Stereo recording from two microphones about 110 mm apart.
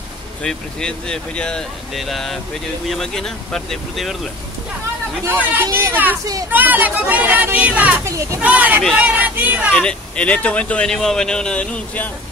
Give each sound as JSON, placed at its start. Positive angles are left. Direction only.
{"t": 0.4, "sound": "speech", "side_deg": 5}
{"t": 5.2, "sound": "speech", "side_deg": -20}
{"t": 8.0, "sound": "speech", "side_deg": -25}
{"t": 8.4, "sound": "speech", "side_deg": -15}
{"t": 9.8, "sound": "speech", "side_deg": 10}